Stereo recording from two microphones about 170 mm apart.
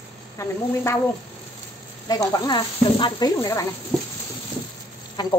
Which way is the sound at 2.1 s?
20° left (ahead or behind).